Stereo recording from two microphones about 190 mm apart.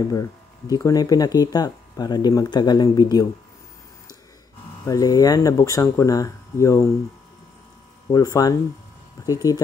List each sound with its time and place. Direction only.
0.1 s speech: 20° left (ahead or behind)
4.8 s speech: 20° left (ahead or behind)
8.1 s speech: 20° left (ahead or behind)